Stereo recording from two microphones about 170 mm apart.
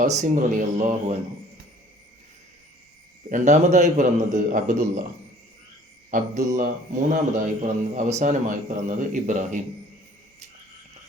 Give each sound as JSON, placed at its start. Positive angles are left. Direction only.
{"t": 0.0, "sound": "a man's voice", "side_deg": -45}
{"t": 3.2, "sound": "a man's voice", "side_deg": -45}
{"t": 6.1, "sound": "a man's voice", "side_deg": -45}